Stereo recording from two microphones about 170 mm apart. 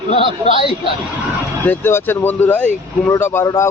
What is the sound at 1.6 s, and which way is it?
Speech, 10° left (ahead or behind).